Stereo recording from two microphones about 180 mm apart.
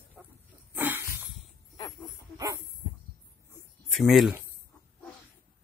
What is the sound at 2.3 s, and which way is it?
Dog, 20° right (ahead or behind).